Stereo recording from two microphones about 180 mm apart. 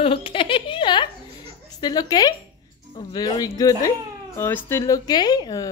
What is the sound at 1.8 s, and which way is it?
A woman's voice, 20° left (ahead or behind).